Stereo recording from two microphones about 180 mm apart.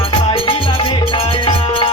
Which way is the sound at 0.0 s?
30° left (ahead or behind).